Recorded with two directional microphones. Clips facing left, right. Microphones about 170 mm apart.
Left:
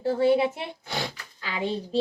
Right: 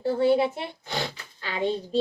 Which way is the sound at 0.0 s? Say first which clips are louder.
Even; 10° left (ahead or behind).